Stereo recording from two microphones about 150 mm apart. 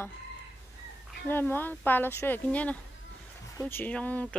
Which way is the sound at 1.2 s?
15° left (ahead or behind).